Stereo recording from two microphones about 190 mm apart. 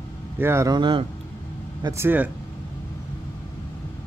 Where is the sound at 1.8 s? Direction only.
15° right (ahead or behind).